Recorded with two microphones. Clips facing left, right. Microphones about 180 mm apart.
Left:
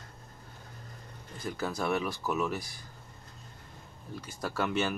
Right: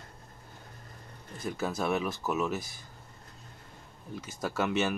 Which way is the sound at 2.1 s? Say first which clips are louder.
Right 1 dB; 25° right (ahead or behind).